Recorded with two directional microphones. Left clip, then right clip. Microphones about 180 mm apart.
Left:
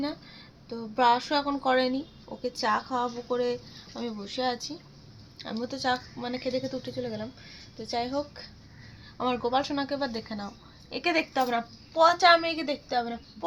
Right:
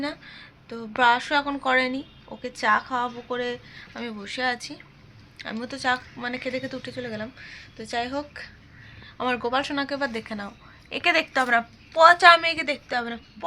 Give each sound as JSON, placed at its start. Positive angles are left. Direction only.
{"t": 0.0, "sound": "a woman's voice", "side_deg": 0}